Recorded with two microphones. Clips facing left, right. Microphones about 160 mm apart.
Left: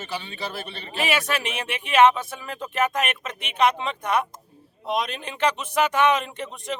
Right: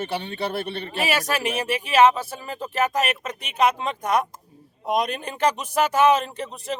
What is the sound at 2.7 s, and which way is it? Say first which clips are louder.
Speech: right 1 dB; 40° right (ahead or behind).